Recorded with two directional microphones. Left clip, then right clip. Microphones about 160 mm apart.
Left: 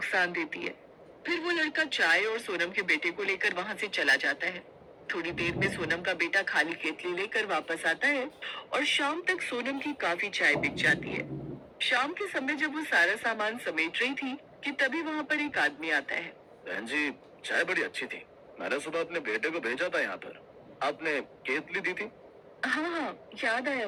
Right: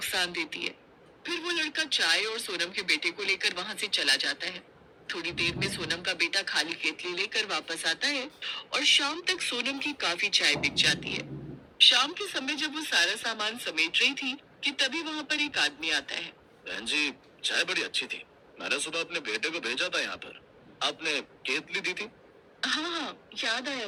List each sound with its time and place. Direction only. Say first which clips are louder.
0.0 s a woman's voice: left 1 dB; 20° right (ahead or behind)